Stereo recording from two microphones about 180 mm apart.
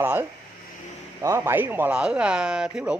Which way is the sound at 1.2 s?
15° right (ahead or behind).